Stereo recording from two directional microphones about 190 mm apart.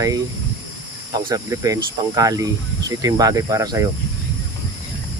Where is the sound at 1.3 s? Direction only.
15° right (ahead or behind).